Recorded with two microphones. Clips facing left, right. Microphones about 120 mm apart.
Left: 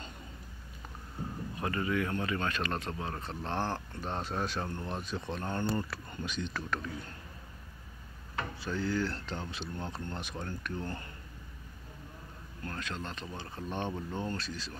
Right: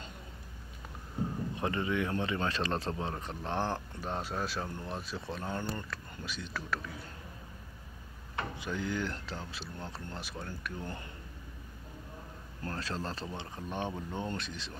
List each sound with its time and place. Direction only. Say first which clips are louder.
1.6 s speech: left 1 dB; 20° right (ahead or behind)
3.2 s speech: even; 15° right (ahead or behind)
8.5 s speech: left 3 dB; 15° right (ahead or behind)
12.6 s speech: right 2 dB; 35° right (ahead or behind)
13.6 s speech: left 1 dB; 10° right (ahead or behind)